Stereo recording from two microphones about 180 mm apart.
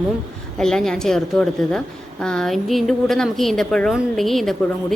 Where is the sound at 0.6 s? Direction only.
5° left (ahead or behind).